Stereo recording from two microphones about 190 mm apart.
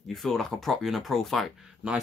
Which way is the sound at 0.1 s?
Centre (ahead or behind).